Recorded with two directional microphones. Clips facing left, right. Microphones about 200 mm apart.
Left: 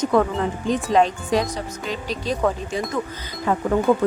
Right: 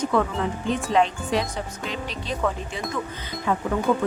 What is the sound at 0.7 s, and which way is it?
Speech, 40° left (ahead or behind).